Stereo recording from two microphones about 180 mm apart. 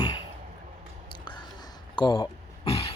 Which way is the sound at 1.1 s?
25° left (ahead or behind).